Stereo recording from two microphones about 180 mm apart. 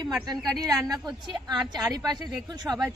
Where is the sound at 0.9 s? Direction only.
25° right (ahead or behind).